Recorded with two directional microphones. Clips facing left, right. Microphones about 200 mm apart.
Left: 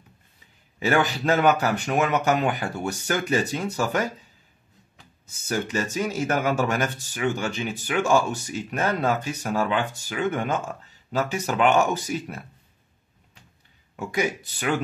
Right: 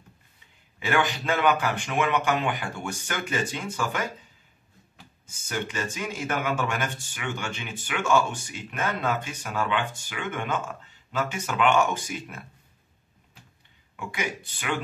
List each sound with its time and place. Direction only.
0.7 s speech: 40° left (ahead or behind)
5.2 s speech: 40° left (ahead or behind)
13.9 s speech: 40° left (ahead or behind)